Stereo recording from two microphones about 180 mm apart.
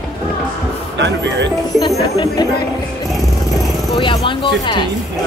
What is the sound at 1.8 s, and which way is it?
Music, 25° left (ahead or behind).